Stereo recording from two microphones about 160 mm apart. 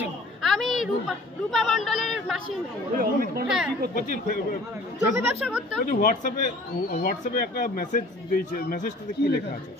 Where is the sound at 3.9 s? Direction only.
60° left (ahead or behind).